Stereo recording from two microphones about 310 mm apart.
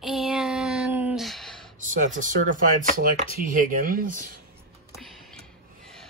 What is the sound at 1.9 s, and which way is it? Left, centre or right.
Speech, right.